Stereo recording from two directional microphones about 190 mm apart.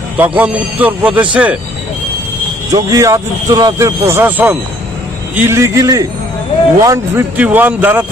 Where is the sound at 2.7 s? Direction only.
20° right (ahead or behind).